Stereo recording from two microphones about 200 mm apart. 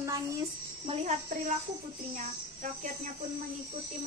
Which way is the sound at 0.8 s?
30° right (ahead or behind).